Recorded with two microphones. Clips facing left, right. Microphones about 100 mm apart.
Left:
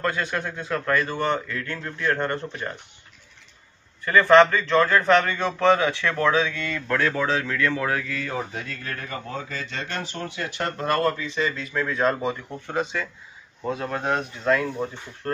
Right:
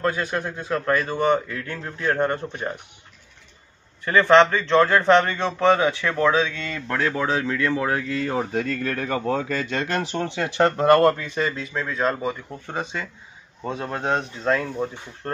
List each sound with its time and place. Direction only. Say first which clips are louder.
0.0 s speech: right 2 dB; 10° right (ahead or behind)
4.0 s speech: even; 20° right (ahead or behind)
8.1 s speech: right 5 dB; 30° right (ahead or behind)
8.5 s speech: right 9 dB; 55° right (ahead or behind)
10.1 s speech: right 6 dB; 80° right
10.8 s speech: right 6 dB; 65° right (ahead or behind); by 11.6 s 40° right (ahead or behind)
11.7 s speech: left 2 dB; 15° right (ahead or behind)
13.7 s speech: right 2 dB; 20° right (ahead or behind)